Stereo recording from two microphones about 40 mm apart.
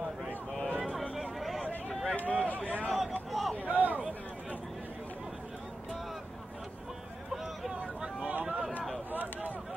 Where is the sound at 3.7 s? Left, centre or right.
Right.